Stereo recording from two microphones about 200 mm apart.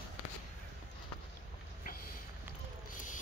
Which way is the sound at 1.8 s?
50° left (ahead or behind).